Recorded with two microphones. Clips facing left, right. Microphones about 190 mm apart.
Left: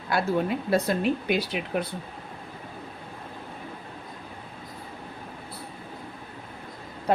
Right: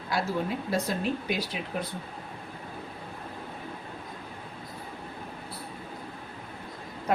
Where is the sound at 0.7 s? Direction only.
60° left (ahead or behind).